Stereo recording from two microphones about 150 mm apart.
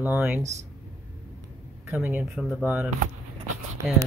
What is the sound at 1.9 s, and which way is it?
Speech, 10° right (ahead or behind).